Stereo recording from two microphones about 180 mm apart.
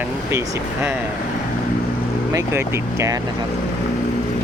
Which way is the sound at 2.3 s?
15° right (ahead or behind).